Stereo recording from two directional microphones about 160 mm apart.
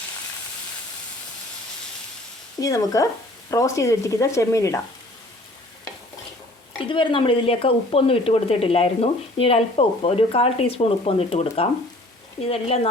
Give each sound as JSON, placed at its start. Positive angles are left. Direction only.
{"t": 2.6, "sound": "speech", "side_deg": 20}
{"t": 6.8, "sound": "speech", "side_deg": 30}